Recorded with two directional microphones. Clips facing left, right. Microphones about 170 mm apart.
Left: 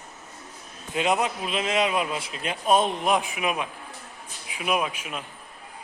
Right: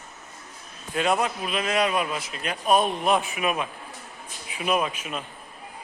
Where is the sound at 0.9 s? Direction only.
20° left (ahead or behind).